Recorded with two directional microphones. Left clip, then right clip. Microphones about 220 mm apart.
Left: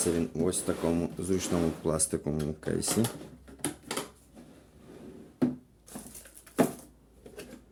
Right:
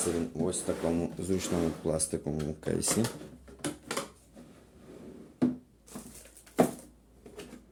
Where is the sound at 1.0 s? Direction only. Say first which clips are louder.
Left 1 dB; 10° left (ahead or behind).